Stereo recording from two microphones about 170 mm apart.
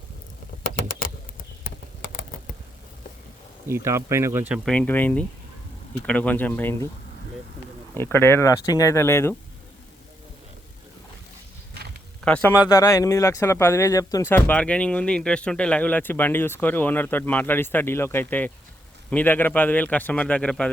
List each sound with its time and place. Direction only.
3.7 s speech: 15° right (ahead or behind)
4.6 s speech: 5° left (ahead or behind)
7.9 s speech: 15° left (ahead or behind)
12.2 s speech: 10° left (ahead or behind)
12.6 s speech: 20° left (ahead or behind)